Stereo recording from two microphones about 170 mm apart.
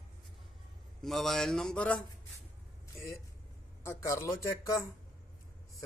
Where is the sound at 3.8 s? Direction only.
15° left (ahead or behind).